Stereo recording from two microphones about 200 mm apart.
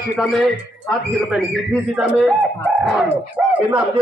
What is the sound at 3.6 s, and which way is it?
Speech, 10° right (ahead or behind).